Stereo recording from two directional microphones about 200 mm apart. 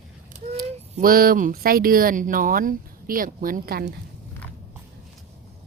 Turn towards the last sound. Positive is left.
turn(degrees=-50)  # may be behind; listen again after turning